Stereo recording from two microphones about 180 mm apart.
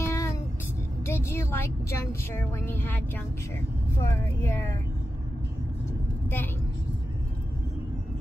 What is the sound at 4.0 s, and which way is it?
Speech, 15° left (ahead or behind).